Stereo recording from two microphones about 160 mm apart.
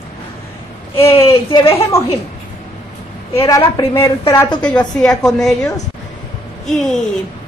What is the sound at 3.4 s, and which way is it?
Speech, 20° left (ahead or behind).